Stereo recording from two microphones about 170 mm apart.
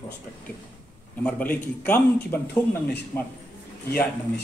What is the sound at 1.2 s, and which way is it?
A man's voice, 10° left (ahead or behind).